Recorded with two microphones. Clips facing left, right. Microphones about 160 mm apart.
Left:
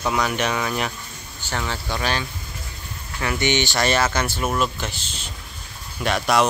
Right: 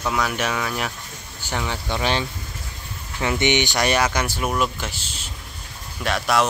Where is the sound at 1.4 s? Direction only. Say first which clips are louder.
Right 1 dB; 15° right (ahead or behind).